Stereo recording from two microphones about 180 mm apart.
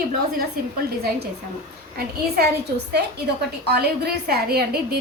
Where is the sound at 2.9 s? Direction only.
65° right (ahead or behind).